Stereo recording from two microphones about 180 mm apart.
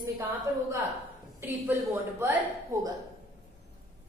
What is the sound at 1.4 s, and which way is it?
Speech, 15° right (ahead or behind).